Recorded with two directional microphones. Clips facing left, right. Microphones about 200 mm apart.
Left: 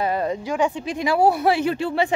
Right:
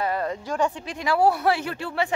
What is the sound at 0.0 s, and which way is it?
Speech, 20° left (ahead or behind).